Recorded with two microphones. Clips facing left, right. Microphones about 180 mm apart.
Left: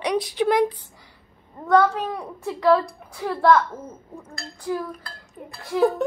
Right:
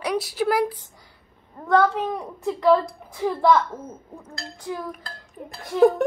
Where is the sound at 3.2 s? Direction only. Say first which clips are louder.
Left 1 dB; 10° right (ahead or behind).